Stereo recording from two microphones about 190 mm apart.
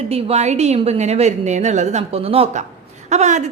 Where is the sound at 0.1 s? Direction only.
35° right (ahead or behind).